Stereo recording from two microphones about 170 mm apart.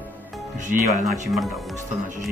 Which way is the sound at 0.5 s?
45° right (ahead or behind).